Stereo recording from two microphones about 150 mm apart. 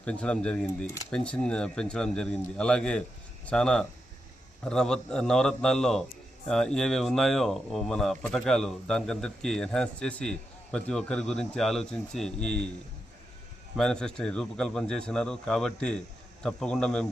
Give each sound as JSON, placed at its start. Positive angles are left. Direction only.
{"t": 0.0, "sound": "speech", "side_deg": 5}
{"t": 13.7, "sound": "speech", "side_deg": 5}